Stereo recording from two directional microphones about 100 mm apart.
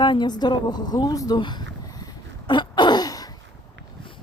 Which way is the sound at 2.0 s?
50° left (ahead or behind).